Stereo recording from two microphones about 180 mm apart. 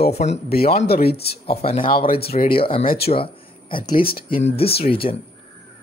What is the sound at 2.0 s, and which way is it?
Speech, 55° left (ahead or behind).